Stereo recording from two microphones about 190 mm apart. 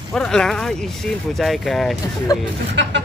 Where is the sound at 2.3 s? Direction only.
20° left (ahead or behind).